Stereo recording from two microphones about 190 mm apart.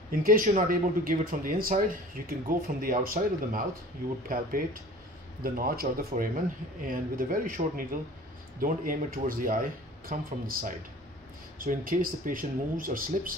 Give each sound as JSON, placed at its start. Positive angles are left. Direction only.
{"t": 0.1, "sound": "speech", "side_deg": -50}